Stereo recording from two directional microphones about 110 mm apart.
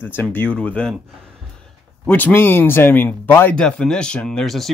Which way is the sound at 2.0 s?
15° left (ahead or behind).